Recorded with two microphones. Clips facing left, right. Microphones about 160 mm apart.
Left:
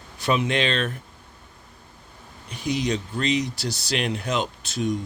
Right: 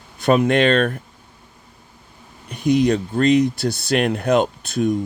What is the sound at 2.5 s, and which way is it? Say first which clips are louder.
Speech: right 9 dB; 55° right (ahead or behind).